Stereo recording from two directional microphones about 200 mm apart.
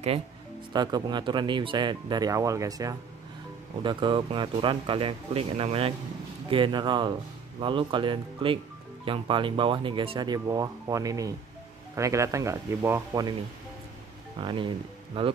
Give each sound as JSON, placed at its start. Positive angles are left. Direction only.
{"t": 0.7, "sound": "speech", "side_deg": -20}
{"t": 14.4, "sound": "speech", "side_deg": -25}